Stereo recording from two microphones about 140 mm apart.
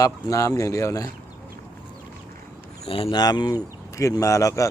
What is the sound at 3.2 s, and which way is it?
Speech, 30° left (ahead or behind).